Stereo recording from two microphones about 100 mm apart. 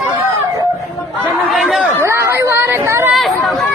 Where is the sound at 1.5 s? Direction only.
Centre (ahead or behind).